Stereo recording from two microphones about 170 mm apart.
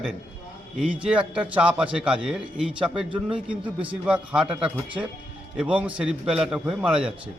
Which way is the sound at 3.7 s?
5° right (ahead or behind).